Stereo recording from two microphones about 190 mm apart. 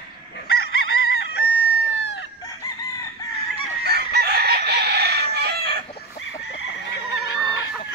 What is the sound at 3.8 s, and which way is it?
Chicken, 55° right (ahead or behind).